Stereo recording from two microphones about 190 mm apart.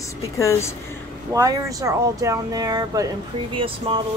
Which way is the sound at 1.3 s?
20° right (ahead or behind).